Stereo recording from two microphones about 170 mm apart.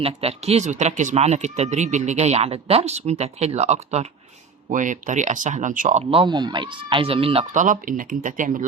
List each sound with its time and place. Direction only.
0.0 s speech: 35° right (ahead or behind)
6.0 s speech: 35° right (ahead or behind)
7.5 s speech: 50° right (ahead or behind)